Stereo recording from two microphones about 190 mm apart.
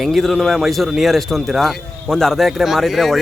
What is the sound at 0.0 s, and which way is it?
A man's voice, centre (ahead or behind).